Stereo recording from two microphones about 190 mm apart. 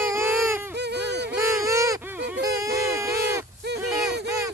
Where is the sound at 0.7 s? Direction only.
60° right (ahead or behind).